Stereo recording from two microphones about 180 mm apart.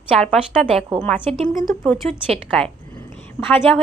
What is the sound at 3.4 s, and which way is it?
Speech, 15° left (ahead or behind).